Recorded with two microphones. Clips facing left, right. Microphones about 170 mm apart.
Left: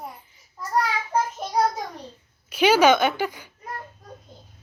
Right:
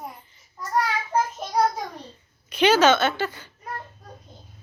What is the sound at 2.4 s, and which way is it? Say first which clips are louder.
A woman's voice: left 1 dB; 10° left (ahead or behind).